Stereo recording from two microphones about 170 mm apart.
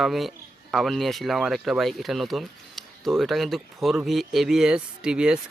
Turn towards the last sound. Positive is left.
turn(degrees=-5)  # may be behind; listen again after turning